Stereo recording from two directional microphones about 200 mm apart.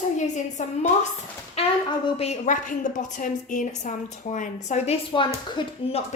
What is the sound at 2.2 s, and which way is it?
A woman's voice, 35° left (ahead or behind).